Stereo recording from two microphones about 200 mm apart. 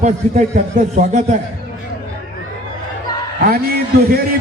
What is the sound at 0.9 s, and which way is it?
Speech, 35° right (ahead or behind).